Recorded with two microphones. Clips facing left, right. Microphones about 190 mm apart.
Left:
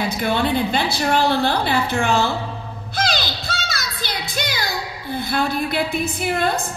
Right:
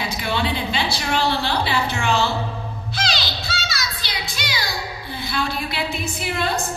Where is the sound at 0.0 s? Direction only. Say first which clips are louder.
Left 4 dB; 50° left (ahead or behind).